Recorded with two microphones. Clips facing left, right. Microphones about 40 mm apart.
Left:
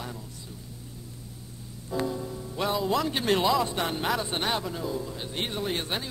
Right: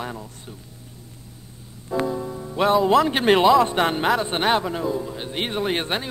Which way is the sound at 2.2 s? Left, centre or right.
Right.